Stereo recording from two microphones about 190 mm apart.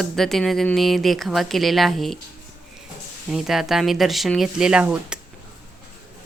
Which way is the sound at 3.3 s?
Centre (ahead or behind).